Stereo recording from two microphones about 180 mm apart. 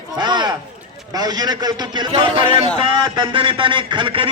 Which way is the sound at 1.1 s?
20° right (ahead or behind).